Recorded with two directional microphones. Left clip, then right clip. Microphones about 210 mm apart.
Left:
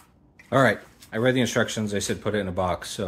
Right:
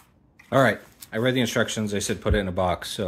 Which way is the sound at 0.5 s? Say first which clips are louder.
Even; 10° right (ahead or behind).